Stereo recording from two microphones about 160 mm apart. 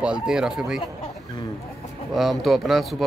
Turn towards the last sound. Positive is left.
turn(degrees=0)  # may be behind; listen again after turning